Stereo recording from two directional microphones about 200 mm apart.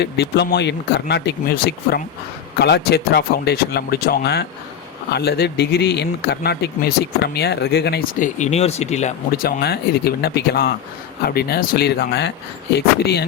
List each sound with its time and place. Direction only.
0.0 s speech: 55° left (ahead or behind)
8.2 s speech: 35° left (ahead or behind); by 13.2 s 55° left (ahead or behind)